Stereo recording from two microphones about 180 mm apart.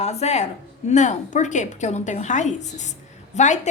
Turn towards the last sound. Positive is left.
turn(degrees=40)  # may be behind; listen again after turning